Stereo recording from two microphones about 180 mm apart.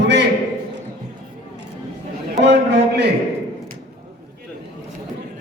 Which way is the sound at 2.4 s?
70° right (ahead or behind).